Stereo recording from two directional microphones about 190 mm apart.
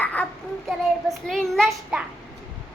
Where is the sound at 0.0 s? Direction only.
5° left (ahead or behind).